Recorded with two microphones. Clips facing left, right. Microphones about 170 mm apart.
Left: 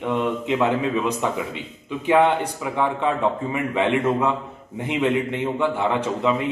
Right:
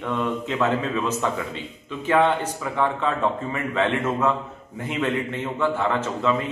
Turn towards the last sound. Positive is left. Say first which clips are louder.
# left 2 dB
turn(degrees=15)  # may be behind; listen again after turning